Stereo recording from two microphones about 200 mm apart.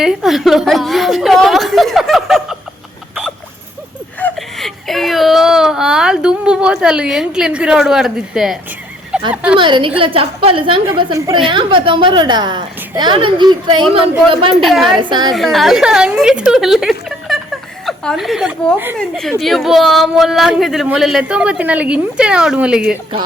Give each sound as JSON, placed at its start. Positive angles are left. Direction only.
{"t": 0.0, "sound": "speech", "side_deg": 0}
{"t": 4.2, "sound": "a woman's voice", "side_deg": 0}
{"t": 9.6, "sound": "a woman's voice", "side_deg": -25}
{"t": 14.5, "sound": "speech", "side_deg": 0}
{"t": 14.8, "sound": "a woman's voice", "side_deg": -25}
{"t": 15.3, "sound": "speech", "side_deg": 0}
{"t": 18.9, "sound": "speech", "side_deg": 5}